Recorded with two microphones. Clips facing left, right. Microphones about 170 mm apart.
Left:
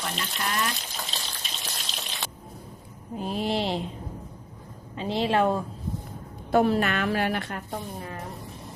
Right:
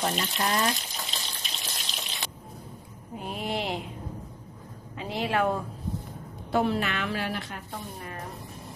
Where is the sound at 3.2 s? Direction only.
30° left (ahead or behind).